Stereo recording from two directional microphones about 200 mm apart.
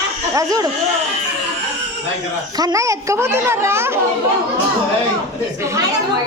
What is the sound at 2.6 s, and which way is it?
A woman's voice, 15° right (ahead or behind).